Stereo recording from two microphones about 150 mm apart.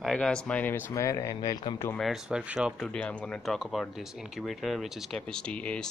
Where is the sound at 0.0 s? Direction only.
5° left (ahead or behind); by 1.8 s 30° left (ahead or behind).